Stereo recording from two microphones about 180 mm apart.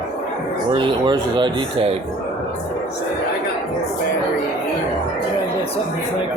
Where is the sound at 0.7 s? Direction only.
25° right (ahead or behind).